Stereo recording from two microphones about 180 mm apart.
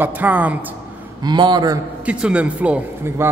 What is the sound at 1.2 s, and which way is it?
Speech, 25° right (ahead or behind).